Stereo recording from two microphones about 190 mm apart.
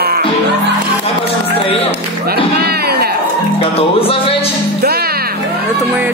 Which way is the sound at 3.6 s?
30° left (ahead or behind).